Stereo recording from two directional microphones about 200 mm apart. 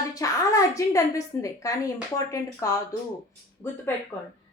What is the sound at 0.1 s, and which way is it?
A woman's voice, 15° left (ahead or behind).